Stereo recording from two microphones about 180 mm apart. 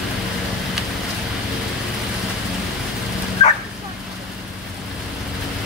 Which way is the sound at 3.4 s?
35° left (ahead or behind).